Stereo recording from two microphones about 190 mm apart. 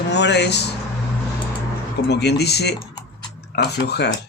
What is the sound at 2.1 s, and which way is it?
Speech, 60° left (ahead or behind).